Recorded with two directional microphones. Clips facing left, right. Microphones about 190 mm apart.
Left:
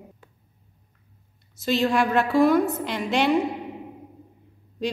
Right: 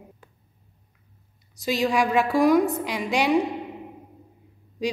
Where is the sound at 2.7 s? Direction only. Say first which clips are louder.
Even; 5° right (ahead or behind).